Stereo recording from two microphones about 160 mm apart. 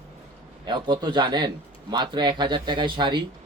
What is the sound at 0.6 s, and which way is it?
A man's voice, 25° right (ahead or behind).